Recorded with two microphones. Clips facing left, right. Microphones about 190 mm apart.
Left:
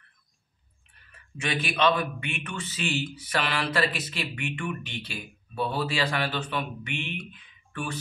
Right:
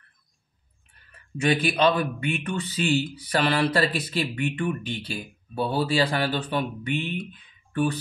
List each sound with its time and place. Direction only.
1.4 s a man's voice: 35° right (ahead or behind)